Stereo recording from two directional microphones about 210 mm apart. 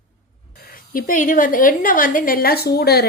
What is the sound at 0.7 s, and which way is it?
A woman's voice, 40° left (ahead or behind).